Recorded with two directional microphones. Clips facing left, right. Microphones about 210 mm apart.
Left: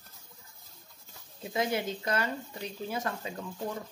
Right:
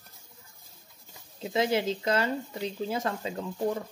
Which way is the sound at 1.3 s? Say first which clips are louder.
Right 4 dB; 25° right (ahead or behind).